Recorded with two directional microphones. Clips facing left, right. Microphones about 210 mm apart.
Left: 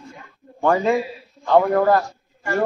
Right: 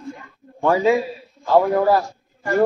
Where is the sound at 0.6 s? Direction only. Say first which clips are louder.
Right 1 dB; centre (ahead or behind).